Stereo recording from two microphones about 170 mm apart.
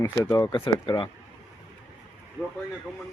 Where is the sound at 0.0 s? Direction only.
20° left (ahead or behind).